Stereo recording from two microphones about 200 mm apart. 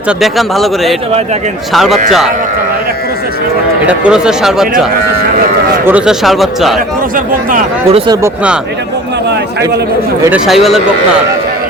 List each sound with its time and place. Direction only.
0.2 s speech: centre (ahead or behind)
3.8 s speech: 5° right (ahead or behind)
5.8 s speech: 5° right (ahead or behind)
7.9 s speech: 30° right (ahead or behind)
10.2 s speech: 5° right (ahead or behind)